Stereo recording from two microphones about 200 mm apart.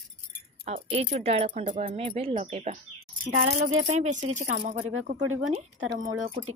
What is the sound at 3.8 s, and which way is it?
Speech, 35° right (ahead or behind).